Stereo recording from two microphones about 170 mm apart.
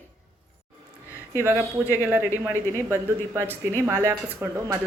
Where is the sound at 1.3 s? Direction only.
15° right (ahead or behind).